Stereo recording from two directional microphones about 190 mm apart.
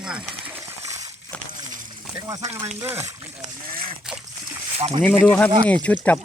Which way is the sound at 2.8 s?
15° right (ahead or behind).